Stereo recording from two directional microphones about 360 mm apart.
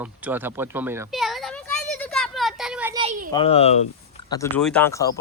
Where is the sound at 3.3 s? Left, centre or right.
Centre.